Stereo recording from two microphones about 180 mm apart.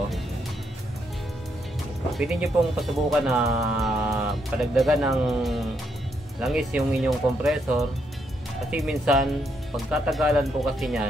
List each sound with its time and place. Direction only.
2.1 s speech: centre (ahead or behind)